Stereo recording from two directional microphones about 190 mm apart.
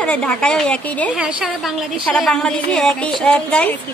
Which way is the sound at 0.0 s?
5° left (ahead or behind).